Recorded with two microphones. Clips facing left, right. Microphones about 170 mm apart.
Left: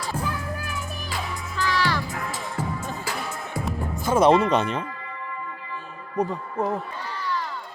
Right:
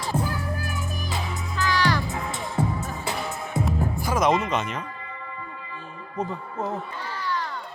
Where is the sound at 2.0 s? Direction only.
25° right (ahead or behind).